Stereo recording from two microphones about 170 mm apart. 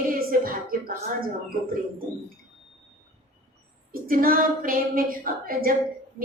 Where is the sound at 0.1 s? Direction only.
55° right (ahead or behind).